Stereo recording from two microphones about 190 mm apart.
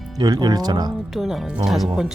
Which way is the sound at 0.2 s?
20° right (ahead or behind).